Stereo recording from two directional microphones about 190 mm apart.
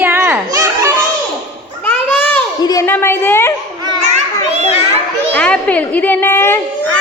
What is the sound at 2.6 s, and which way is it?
Speech, 15° left (ahead or behind).